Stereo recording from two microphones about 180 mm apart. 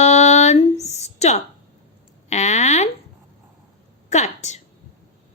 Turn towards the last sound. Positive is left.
turn(degrees=40)  # may be behind; listen again after turning